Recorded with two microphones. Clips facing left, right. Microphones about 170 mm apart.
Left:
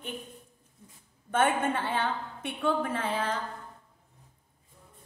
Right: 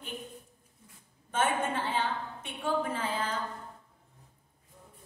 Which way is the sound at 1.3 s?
60° left (ahead or behind).